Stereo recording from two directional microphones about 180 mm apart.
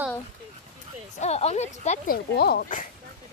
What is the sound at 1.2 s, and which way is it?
Speech, 35° left (ahead or behind).